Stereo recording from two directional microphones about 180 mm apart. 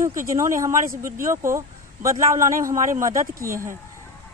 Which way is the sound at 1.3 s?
15° right (ahead or behind).